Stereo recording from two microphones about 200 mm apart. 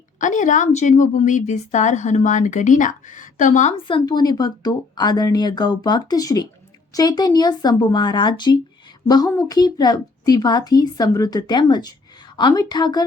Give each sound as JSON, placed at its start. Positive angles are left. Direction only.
{"t": 0.2, "sound": "a woman's voice", "side_deg": 40}